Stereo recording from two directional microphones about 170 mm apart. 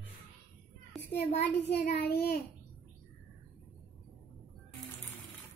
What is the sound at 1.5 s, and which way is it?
Child singing, 80° left.